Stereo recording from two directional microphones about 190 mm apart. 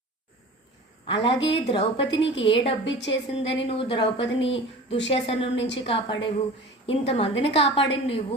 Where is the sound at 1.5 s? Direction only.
25° left (ahead or behind).